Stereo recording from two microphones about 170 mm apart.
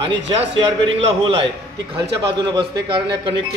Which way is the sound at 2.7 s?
30° right (ahead or behind).